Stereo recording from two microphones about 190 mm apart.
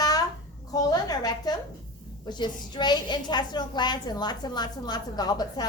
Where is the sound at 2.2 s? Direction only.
25° left (ahead or behind).